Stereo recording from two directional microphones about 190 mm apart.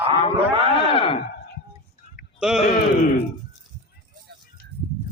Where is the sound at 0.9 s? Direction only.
30° left (ahead or behind).